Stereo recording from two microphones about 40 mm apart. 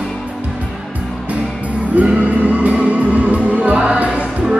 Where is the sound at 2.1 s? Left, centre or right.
Right.